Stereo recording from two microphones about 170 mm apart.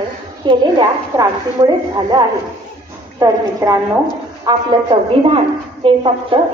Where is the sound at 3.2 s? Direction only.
20° right (ahead or behind).